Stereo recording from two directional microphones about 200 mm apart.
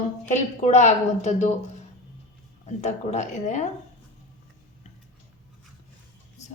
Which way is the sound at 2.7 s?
35° left (ahead or behind).